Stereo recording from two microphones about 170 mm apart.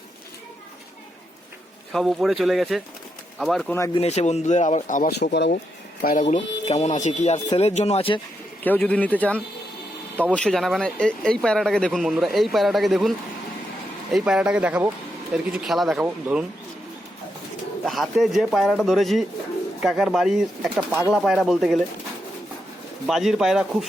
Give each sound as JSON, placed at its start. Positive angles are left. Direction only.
{"t": 1.9, "sound": "speech", "side_deg": 0}
{"t": 3.8, "sound": "speech", "side_deg": 20}
{"t": 4.0, "sound": "speech", "side_deg": 40}
{"t": 5.2, "sound": "speech", "side_deg": 80}
{"t": 6.0, "sound": "speech", "side_deg": 55}
{"t": 6.2, "sound": "speech", "side_deg": 40}
{"t": 8.6, "sound": "speech", "side_deg": 10}
{"t": 17.8, "sound": "speech", "side_deg": 0}
{"t": 23.0, "sound": "speech", "side_deg": 0}